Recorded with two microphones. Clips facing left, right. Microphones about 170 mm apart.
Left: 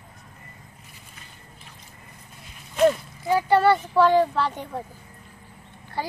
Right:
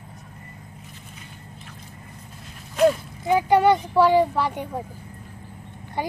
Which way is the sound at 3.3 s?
15° right (ahead or behind).